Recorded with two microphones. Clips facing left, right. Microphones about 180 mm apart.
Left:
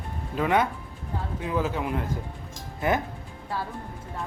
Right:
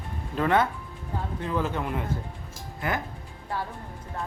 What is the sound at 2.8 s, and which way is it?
Speech, 20° left (ahead or behind).